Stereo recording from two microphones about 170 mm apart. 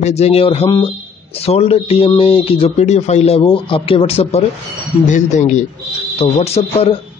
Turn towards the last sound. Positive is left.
turn(degrees=35)  # may be behind; listen again after turning